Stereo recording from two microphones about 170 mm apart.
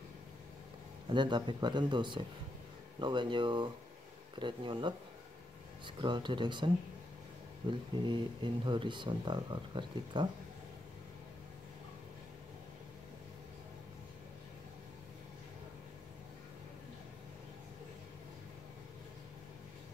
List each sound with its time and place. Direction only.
1.1 s speech: 25° right (ahead or behind)